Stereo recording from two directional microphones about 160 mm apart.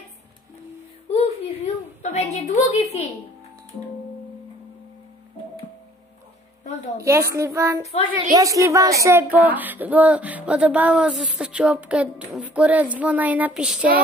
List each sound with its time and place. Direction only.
1.1 s a sound: 40° left (ahead or behind)
2.3 s a woman's voice: 45° left (ahead or behind)
7.0 s a woman's voice: 15° right (ahead or behind)